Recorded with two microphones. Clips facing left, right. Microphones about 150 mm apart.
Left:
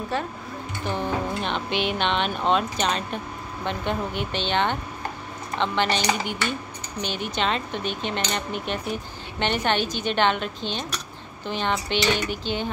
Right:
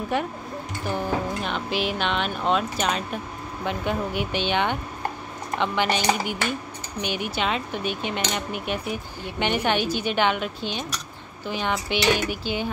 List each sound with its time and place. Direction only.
0.1 s cutlery: 15° right (ahead or behind)
0.8 s speech: 10° right (ahead or behind)
3.6 s cutlery: 10° right (ahead or behind)